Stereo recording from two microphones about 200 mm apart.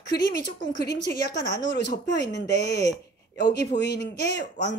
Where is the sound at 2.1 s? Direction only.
60° left (ahead or behind).